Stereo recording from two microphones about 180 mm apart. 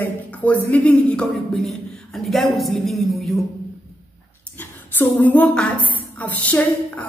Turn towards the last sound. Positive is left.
turn(degrees=10)  # may be behind; listen again after turning